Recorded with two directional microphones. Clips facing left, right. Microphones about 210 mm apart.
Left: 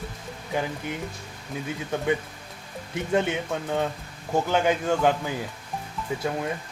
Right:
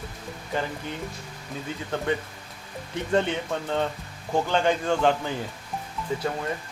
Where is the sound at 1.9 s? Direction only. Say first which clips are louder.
Left 2 dB; 10° left (ahead or behind).